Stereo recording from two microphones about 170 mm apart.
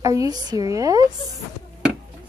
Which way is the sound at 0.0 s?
20° right (ahead or behind).